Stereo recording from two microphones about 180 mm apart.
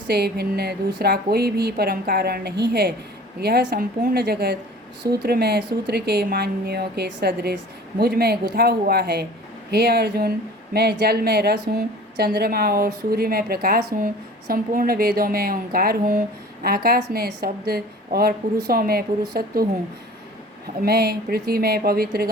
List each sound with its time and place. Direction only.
0.1 s a woman's voice: 65° right (ahead or behind)
20.8 s a woman's voice: 60° right (ahead or behind)